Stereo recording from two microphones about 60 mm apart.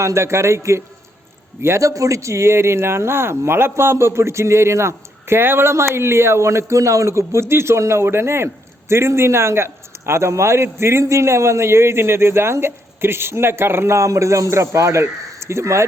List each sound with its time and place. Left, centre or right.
0.0 s speech: right
1.9 s speech: right